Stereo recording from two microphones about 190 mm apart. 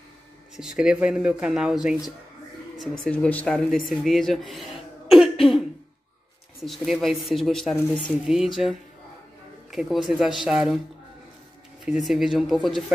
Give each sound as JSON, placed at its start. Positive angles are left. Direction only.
{"t": 0.6, "sound": "speech", "side_deg": -5}
{"t": 5.1, "sound": "cough", "side_deg": 0}
{"t": 6.6, "sound": "speech", "side_deg": 0}
{"t": 11.8, "sound": "speech", "side_deg": 0}